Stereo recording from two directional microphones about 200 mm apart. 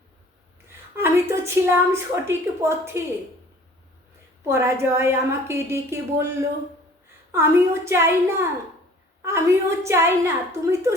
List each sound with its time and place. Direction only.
0.9 s a woman's voice: 15° right (ahead or behind)
4.4 s a woman's voice: 15° right (ahead or behind)